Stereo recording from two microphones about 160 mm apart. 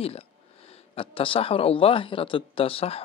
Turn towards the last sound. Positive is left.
turn(degrees=35)  # may be behind; listen again after turning